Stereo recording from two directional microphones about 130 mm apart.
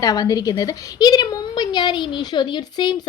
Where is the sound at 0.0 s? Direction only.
30° left (ahead or behind).